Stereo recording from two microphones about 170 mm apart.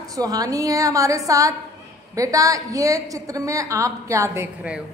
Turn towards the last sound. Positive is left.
turn(degrees=-20)  # may be behind; listen again after turning